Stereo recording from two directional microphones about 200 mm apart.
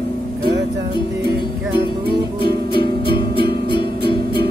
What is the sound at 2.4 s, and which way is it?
Music, 25° left (ahead or behind).